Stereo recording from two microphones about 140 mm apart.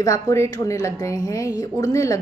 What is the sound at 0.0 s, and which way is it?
Speech, 20° left (ahead or behind).